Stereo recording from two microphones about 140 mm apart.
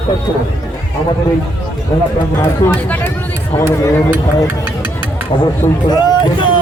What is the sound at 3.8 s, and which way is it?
Speech, 20° left (ahead or behind).